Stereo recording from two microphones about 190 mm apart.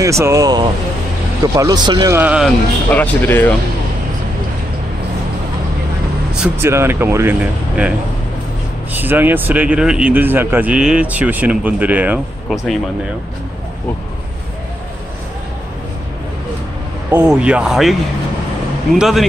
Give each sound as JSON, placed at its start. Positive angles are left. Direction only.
{"t": 0.0, "sound": "speech", "side_deg": -15}
{"t": 2.1, "sound": "speech", "side_deg": -5}
{"t": 2.9, "sound": "speech", "side_deg": 10}
{"t": 6.3, "sound": "speech", "side_deg": -10}
{"t": 8.9, "sound": "speech", "side_deg": -10}
{"t": 17.1, "sound": "speech", "side_deg": -5}
{"t": 18.9, "sound": "speech", "side_deg": 0}